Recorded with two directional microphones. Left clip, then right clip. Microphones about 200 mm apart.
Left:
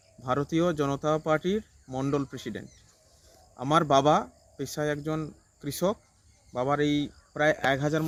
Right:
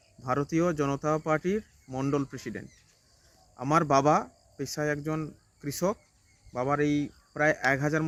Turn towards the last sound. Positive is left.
turn(degrees=-5)  # may be behind; listen again after turning